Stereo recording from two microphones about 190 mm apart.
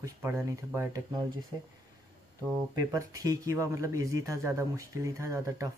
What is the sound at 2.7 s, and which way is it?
Speech, 20° right (ahead or behind).